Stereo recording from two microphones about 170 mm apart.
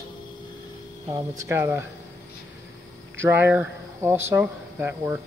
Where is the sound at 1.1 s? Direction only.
15° right (ahead or behind).